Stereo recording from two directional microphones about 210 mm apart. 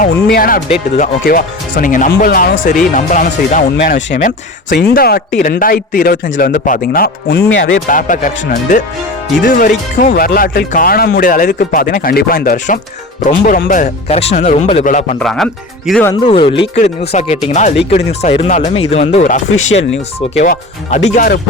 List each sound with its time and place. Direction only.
0.3 s speech: 45° left (ahead or behind); by 7.8 s 60° left (ahead or behind)
7.9 s speech: 40° left (ahead or behind)
15.2 s speech: centre (ahead or behind)
16.2 s speech: 25° left (ahead or behind)